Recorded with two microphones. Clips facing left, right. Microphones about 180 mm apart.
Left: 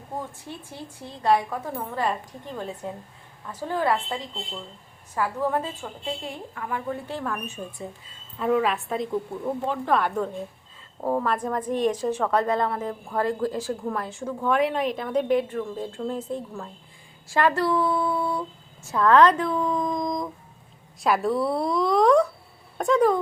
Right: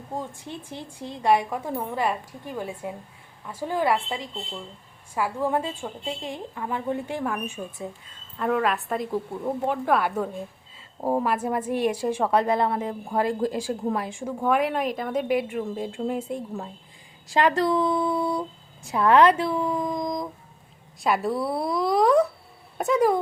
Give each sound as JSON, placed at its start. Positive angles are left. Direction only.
{"t": 0.3, "sound": "a woman's voice", "side_deg": -20}
{"t": 17.2, "sound": "a sound", "side_deg": -20}
{"t": 18.9, "sound": "a woman's voice", "side_deg": -10}